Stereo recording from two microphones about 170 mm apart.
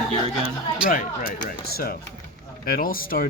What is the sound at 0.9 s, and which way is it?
A man's voice, 55° left (ahead or behind).